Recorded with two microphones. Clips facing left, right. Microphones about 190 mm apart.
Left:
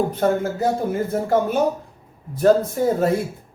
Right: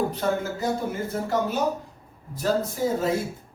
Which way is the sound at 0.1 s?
55° left (ahead or behind).